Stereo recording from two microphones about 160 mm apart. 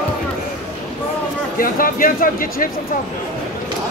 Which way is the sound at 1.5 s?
60° left (ahead or behind).